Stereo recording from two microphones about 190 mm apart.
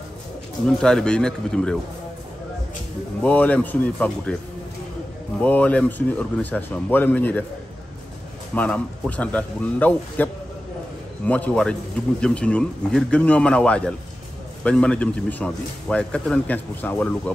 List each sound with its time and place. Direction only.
0.7 s speech: 5° left (ahead or behind)
3.2 s a man's voice: 10° left (ahead or behind)
5.4 s a man's voice: 10° left (ahead or behind)
8.5 s a man's voice: 5° left (ahead or behind)